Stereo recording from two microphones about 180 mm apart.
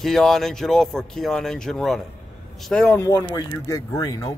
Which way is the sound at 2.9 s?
15° left (ahead or behind).